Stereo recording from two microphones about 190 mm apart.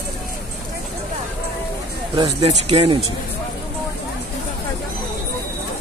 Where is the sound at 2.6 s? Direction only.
30° right (ahead or behind).